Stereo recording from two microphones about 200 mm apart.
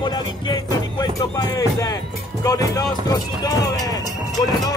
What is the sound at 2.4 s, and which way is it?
Speech, 15° left (ahead or behind).